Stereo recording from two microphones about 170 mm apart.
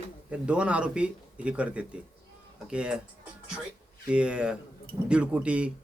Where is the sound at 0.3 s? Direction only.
5° right (ahead or behind).